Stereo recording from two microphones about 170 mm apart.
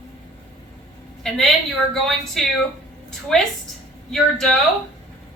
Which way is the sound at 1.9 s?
Centre (ahead or behind).